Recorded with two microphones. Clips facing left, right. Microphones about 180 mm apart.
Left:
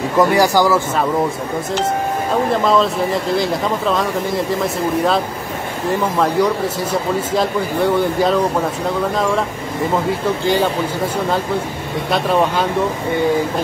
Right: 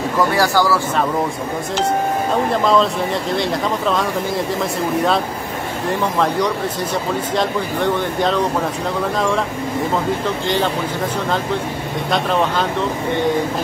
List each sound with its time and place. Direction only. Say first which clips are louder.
0.2 s speech: left 4 dB; 20° left (ahead or behind)
2.5 s speech: left 1 dB; centre (ahead or behind)
10.2 s speech: left 3 dB; 10° left (ahead or behind)
12.1 s speech: left 2 dB; 10° left (ahead or behind)